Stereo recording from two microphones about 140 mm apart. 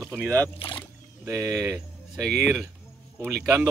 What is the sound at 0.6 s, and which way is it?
Speech, 40° left (ahead or behind).